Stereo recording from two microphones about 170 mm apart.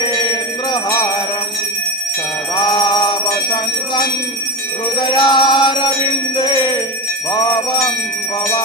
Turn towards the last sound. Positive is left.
turn(degrees=25)  # may be behind; listen again after turning